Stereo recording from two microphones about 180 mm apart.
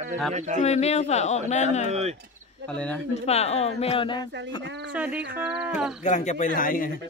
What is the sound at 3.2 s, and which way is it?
A woman's voice, 35° left (ahead or behind).